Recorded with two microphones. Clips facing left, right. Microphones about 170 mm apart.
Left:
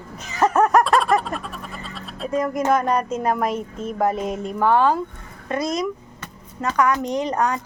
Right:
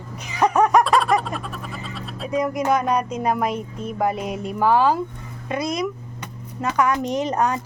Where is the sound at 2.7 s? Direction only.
5° right (ahead or behind).